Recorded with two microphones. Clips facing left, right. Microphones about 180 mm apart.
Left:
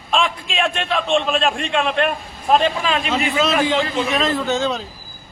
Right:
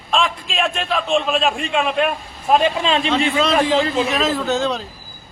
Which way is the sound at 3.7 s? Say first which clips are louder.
Right 2 dB; centre (ahead or behind).